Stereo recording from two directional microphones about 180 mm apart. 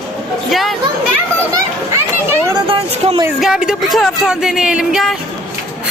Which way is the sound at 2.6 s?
30° right (ahead or behind).